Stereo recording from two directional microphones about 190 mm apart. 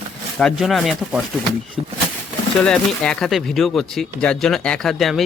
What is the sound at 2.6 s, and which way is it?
Speech, 5° left (ahead or behind).